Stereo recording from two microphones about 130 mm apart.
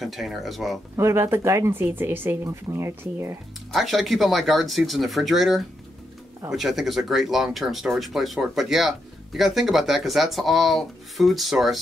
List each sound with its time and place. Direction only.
0.0 s speech: centre (ahead or behind)
0.9 s speech: 20° right (ahead or behind)
3.7 s speech: centre (ahead or behind)